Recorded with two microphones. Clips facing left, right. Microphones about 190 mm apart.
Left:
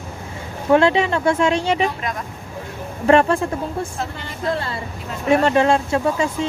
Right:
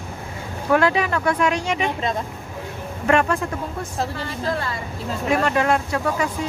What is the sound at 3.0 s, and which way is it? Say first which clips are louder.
Speech: left 5 dB; 30° left (ahead or behind).